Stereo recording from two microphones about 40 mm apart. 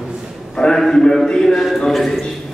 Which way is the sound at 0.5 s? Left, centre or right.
Left.